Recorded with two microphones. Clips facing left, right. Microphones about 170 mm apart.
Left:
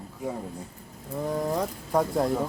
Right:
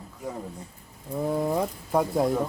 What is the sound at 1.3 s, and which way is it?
Speech, 5° right (ahead or behind).